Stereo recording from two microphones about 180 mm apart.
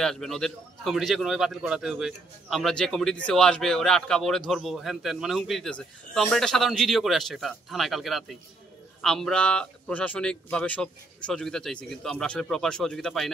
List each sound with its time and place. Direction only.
0.0 s a man's voice: centre (ahead or behind)